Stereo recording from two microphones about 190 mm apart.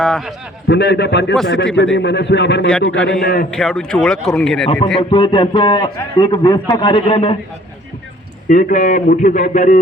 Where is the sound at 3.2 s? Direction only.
50° left (ahead or behind).